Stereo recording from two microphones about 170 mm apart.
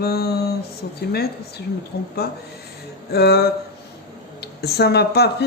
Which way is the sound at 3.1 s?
75° left (ahead or behind).